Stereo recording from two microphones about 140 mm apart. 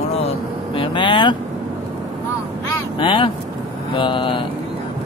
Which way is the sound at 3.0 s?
35° left (ahead or behind).